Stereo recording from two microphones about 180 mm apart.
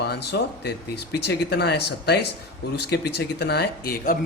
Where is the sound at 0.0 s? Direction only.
65° left (ahead or behind); by 4.2 s 50° left (ahead or behind).